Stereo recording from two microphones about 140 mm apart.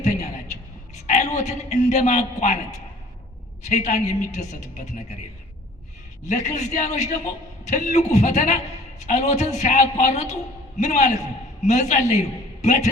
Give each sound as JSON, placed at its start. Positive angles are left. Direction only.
{"t": 0.0, "sound": "a sound", "side_deg": 55}
{"t": 1.0, "sound": "a man's voice", "side_deg": 60}
{"t": 3.7, "sound": "a man's voice", "side_deg": 55}
{"t": 6.2, "sound": "a man's voice", "side_deg": 55}